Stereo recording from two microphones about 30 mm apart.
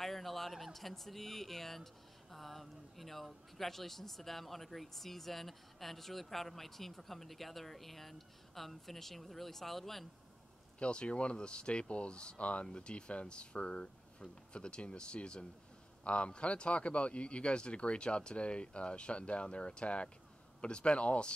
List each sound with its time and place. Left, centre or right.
0.0 s a sound: centre
0.7 s speech: centre
10.8 s speech: left
12.4 s speech: left
12.6 s speech: left